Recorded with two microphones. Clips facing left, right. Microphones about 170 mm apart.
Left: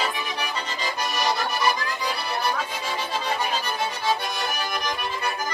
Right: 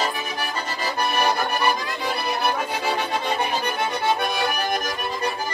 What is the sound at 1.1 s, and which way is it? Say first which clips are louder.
Accordion: right 2 dB; 55° right (ahead or behind).